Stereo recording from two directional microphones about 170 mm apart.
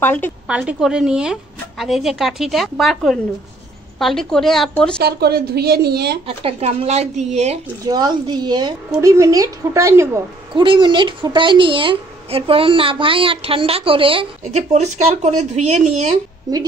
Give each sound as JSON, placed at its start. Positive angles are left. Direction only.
{"t": 0.0, "sound": "a woman's voice", "side_deg": 10}
{"t": 0.5, "sound": "a woman's voice", "side_deg": -5}
{"t": 5.0, "sound": "a woman's voice", "side_deg": -65}
{"t": 6.2, "sound": "a woman's voice", "side_deg": -35}
{"t": 7.8, "sound": "a woman's voice", "side_deg": -25}
{"t": 10.5, "sound": "a woman's voice", "side_deg": -30}
{"t": 16.5, "sound": "a woman's voice", "side_deg": -25}